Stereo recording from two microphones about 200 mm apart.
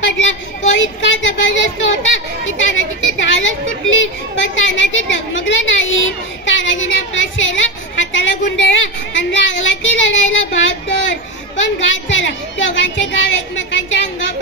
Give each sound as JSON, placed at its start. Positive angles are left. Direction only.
{"t": 0.0, "sound": "a woman's voice", "side_deg": 70}